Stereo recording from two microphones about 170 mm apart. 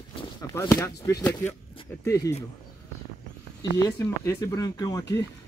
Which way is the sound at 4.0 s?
20° left (ahead or behind).